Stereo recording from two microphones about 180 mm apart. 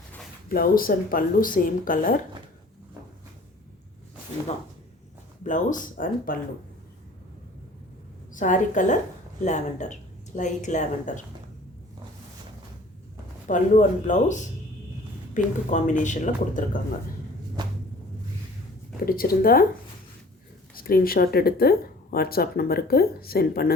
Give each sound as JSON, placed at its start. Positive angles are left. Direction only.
{"t": 0.4, "sound": "speech", "side_deg": 55}
{"t": 5.4, "sound": "speech", "side_deg": 45}
{"t": 8.3, "sound": "speech", "side_deg": 45}
{"t": 13.5, "sound": "speech", "side_deg": 45}
{"t": 15.4, "sound": "speech", "side_deg": 45}
{"t": 18.9, "sound": "speech", "side_deg": 55}
{"t": 20.7, "sound": "speech", "side_deg": 55}